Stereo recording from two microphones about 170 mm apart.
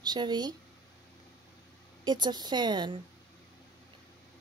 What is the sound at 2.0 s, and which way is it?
Speech, 25° right (ahead or behind).